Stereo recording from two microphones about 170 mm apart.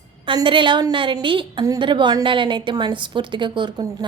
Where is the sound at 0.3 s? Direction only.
30° right (ahead or behind).